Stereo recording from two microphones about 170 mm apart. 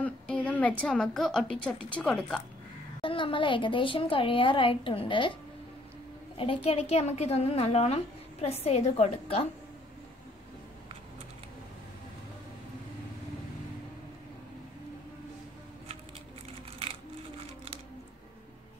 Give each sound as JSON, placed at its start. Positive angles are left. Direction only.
{"t": 0.0, "sound": "a woman's voice", "side_deg": 10}
{"t": 3.0, "sound": "a woman's voice", "side_deg": 30}